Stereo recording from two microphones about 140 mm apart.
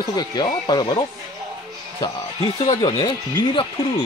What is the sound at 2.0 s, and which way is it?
Speech, 40° left (ahead or behind).